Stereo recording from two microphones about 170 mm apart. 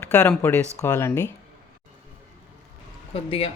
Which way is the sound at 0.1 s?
10° left (ahead or behind).